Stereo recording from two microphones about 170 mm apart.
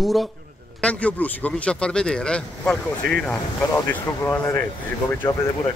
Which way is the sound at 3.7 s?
15° left (ahead or behind).